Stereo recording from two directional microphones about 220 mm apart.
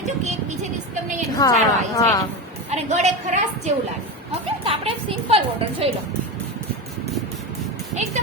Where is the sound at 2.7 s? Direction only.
30° right (ahead or behind).